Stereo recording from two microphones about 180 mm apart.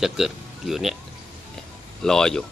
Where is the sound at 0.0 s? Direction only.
Centre (ahead or behind).